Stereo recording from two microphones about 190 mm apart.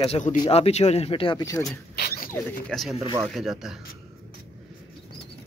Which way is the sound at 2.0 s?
50° left (ahead or behind).